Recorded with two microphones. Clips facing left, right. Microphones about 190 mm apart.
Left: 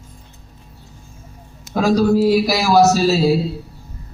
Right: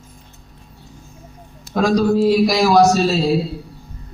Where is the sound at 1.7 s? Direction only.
5° left (ahead or behind).